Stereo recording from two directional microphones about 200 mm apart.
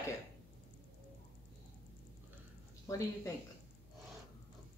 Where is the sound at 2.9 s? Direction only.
15° left (ahead or behind).